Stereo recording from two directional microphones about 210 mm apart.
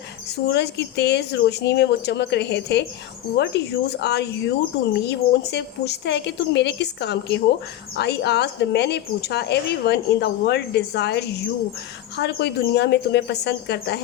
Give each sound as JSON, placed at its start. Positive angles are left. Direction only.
{"t": 0.3, "sound": "speech", "side_deg": 55}